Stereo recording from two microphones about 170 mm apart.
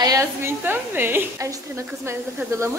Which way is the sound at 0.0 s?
20° right (ahead or behind).